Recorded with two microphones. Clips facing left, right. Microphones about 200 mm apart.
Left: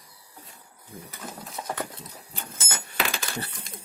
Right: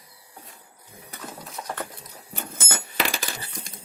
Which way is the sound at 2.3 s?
60° right (ahead or behind).